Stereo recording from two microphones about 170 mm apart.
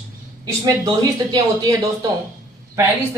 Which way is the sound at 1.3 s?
25° right (ahead or behind).